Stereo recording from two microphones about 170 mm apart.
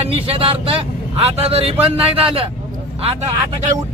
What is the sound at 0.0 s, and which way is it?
Speech, 35° right (ahead or behind).